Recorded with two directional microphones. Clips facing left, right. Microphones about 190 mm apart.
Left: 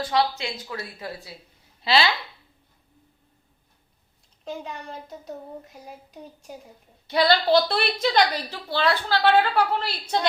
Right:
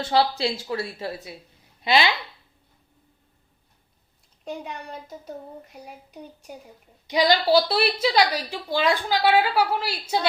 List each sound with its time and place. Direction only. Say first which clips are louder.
0.0 s a woman's voice: right 2 dB; 30° right (ahead or behind)
7.1 s a woman's voice: even; 15° right (ahead or behind)